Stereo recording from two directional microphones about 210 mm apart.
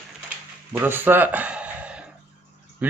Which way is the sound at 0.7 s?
10° right (ahead or behind).